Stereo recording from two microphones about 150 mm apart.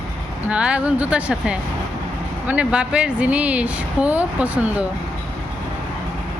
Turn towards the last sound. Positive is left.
turn(degrees=-10)  # may be behind; listen again after turning